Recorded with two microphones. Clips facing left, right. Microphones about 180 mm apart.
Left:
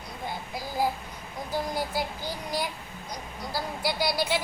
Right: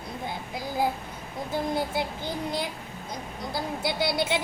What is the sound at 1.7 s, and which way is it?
A woman's voice, 25° right (ahead or behind).